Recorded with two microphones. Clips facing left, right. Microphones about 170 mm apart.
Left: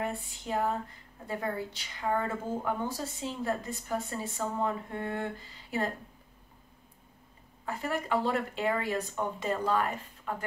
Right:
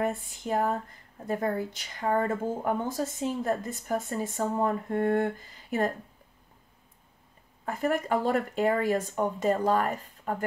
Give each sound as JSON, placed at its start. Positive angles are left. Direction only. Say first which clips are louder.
{"t": 0.0, "sound": "speech", "louder": "right 5 dB", "side_deg": -45}
{"t": 7.6, "sound": "speech", "louder": "right 5 dB", "side_deg": -45}